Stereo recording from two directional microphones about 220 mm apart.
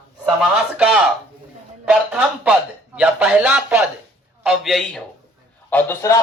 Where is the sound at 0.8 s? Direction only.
5° right (ahead or behind).